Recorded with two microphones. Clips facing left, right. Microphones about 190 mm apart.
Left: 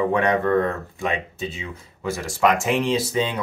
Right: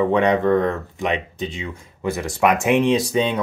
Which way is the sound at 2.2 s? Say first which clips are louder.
Right 1 dB; 20° right (ahead or behind).